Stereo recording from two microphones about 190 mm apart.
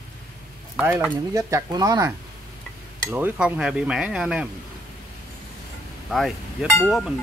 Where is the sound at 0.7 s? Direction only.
10° right (ahead or behind).